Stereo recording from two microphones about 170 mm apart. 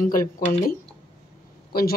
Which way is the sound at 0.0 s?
55° left (ahead or behind).